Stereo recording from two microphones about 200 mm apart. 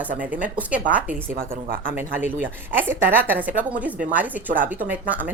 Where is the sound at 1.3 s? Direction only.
45° right (ahead or behind).